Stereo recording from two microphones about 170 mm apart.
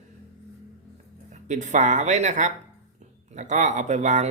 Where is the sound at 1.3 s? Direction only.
45° right (ahead or behind).